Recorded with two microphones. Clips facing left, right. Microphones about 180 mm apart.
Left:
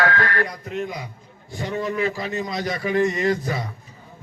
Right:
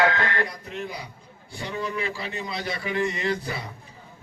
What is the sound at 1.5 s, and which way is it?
A man's voice, 40° left (ahead or behind).